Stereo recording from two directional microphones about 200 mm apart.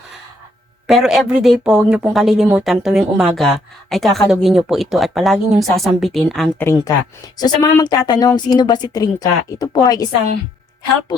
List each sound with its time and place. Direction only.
0.9 s speech: centre (ahead or behind)
7.3 s a woman's voice: 20° left (ahead or behind)